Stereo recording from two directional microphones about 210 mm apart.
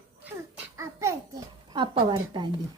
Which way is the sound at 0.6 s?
15° right (ahead or behind).